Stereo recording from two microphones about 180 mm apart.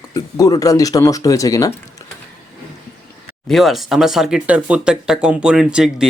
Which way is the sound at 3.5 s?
Centre (ahead or behind).